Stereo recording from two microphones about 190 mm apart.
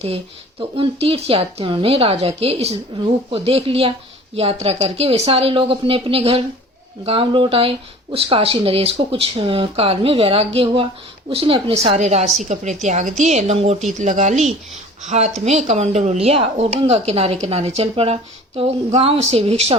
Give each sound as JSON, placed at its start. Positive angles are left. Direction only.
{"t": 0.8, "sound": "a woman's voice", "side_deg": -30}